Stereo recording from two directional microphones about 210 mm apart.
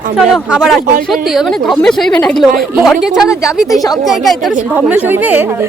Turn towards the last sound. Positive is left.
turn(degrees=-10)  # may be behind; listen again after turning